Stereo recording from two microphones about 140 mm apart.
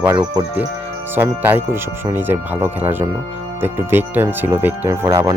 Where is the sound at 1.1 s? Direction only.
15° right (ahead or behind).